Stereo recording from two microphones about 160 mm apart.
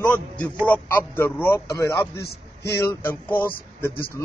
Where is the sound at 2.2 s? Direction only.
90° left.